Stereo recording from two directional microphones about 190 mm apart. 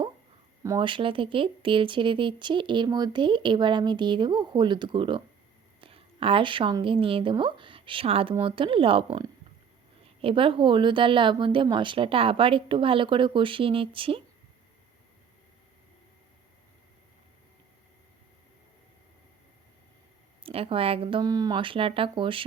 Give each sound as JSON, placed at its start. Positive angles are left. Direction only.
{"t": 0.6, "sound": "speech", "side_deg": -20}
{"t": 20.4, "sound": "speech", "side_deg": -30}